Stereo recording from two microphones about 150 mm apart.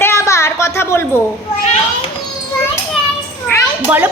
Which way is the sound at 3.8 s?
15° right (ahead or behind).